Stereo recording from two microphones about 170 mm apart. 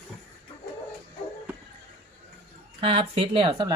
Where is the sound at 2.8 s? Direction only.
30° right (ahead or behind).